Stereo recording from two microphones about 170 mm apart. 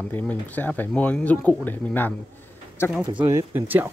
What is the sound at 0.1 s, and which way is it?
Speech, 10° left (ahead or behind).